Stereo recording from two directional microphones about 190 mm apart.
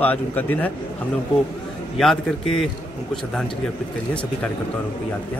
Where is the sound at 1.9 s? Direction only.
Centre (ahead or behind).